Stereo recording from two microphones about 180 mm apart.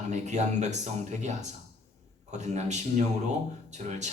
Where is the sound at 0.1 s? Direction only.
40° right (ahead or behind).